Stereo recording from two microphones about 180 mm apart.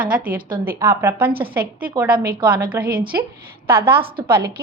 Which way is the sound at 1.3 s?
30° right (ahead or behind).